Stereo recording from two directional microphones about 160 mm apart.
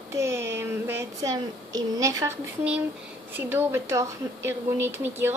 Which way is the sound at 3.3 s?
15° right (ahead or behind).